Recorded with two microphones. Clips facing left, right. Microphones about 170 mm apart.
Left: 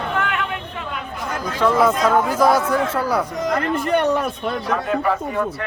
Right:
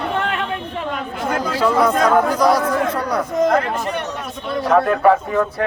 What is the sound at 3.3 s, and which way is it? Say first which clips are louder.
Speech: right 5 dB; 50° right (ahead or behind).